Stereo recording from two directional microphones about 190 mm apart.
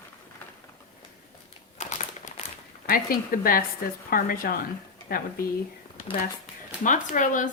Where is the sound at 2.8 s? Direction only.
50° left (ahead or behind).